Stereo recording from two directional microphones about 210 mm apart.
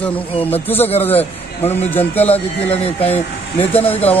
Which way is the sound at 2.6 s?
30° left (ahead or behind).